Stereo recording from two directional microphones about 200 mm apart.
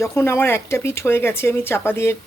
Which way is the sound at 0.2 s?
10° left (ahead or behind).